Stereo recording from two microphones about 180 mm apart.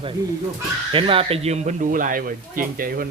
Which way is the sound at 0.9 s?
30° right (ahead or behind).